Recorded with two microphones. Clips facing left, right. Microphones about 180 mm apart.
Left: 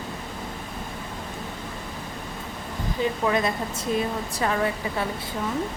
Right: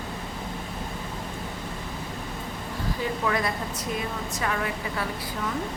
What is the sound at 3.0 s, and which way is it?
A woman's voice, 25° left (ahead or behind).